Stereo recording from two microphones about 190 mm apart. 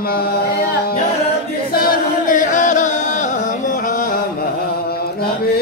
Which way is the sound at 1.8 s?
45° left (ahead or behind).